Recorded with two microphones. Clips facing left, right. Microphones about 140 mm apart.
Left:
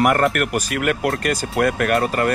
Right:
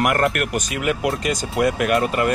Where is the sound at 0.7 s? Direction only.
55° left (ahead or behind).